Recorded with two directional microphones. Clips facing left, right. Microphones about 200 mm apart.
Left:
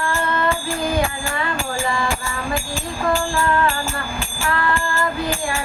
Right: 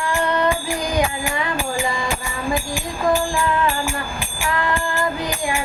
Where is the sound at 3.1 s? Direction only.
15° right (ahead or behind).